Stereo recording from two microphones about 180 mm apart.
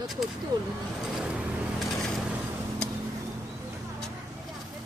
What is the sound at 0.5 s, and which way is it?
Speech, 20° right (ahead or behind).